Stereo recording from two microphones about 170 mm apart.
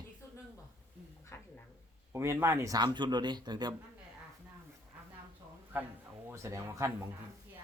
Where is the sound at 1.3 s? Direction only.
15° left (ahead or behind).